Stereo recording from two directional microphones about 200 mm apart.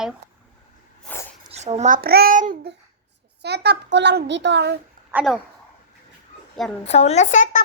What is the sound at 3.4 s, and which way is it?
A child's voice, 55° right (ahead or behind).